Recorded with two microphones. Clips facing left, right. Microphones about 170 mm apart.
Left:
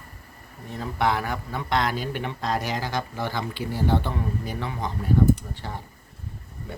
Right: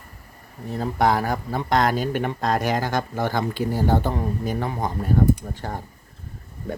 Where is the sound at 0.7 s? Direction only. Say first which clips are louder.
Right 4 dB; 40° right (ahead or behind).